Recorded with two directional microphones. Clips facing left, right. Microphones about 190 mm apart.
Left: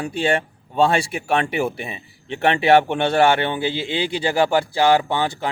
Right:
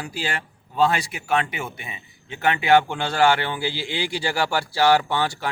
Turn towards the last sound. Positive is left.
turn(degrees=20)  # may be behind; listen again after turning